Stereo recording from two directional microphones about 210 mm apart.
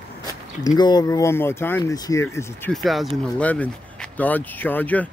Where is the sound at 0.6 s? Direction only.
20° left (ahead or behind).